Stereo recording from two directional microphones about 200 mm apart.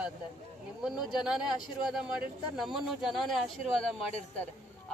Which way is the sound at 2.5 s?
Centre (ahead or behind).